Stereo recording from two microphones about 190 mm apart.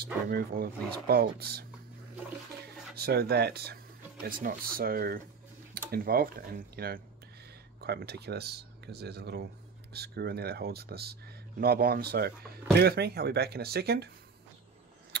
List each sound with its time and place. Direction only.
0.0 s speech: 55° right (ahead or behind)
3.0 s speech: 55° right (ahead or behind)